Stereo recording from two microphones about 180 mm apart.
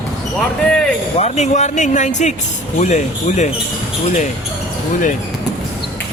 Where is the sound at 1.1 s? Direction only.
40° left (ahead or behind).